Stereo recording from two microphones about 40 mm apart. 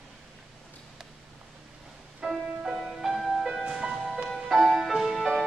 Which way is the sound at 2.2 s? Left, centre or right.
Centre.